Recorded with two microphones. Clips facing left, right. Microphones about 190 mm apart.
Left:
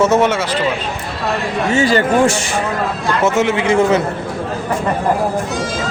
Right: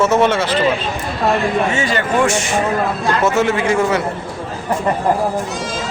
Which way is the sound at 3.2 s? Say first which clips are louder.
Left 2 dB; 20° left (ahead or behind).